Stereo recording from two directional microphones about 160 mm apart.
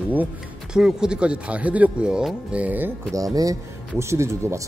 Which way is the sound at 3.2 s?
20° right (ahead or behind).